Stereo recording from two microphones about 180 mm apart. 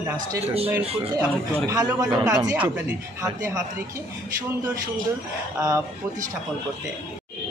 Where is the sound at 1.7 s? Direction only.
20° right (ahead or behind).